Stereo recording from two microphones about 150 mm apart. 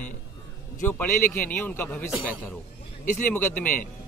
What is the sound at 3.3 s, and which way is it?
Speech, 10° left (ahead or behind).